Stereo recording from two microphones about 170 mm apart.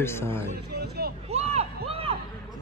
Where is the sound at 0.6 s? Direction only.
70° right (ahead or behind).